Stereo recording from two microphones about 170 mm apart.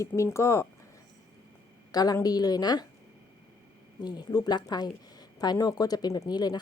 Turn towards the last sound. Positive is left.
turn(degrees=25)  # may be behind; listen again after turning